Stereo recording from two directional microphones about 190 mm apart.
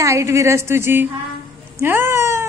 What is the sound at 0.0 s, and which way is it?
Speech, 15° right (ahead or behind).